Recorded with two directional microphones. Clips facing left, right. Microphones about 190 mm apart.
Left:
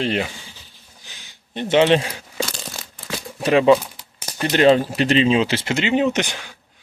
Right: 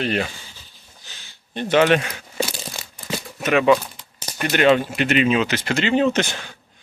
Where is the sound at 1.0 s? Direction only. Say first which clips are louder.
Left 1 dB; 15° left (ahead or behind).